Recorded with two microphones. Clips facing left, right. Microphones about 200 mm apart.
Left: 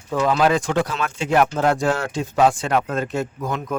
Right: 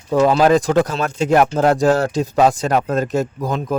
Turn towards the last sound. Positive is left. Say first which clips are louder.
# right 4 dB
turn(degrees=-35)  # may be behind; listen again after turning